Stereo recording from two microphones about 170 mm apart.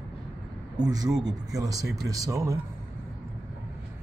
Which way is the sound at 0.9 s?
20° right (ahead or behind).